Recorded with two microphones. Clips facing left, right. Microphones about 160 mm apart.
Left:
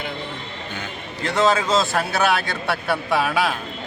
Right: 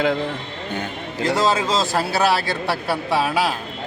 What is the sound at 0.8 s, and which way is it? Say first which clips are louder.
Speech: right 5 dB; 35° right (ahead or behind).